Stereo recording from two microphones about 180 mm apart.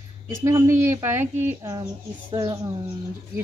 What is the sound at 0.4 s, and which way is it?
A woman's voice, 15° right (ahead or behind).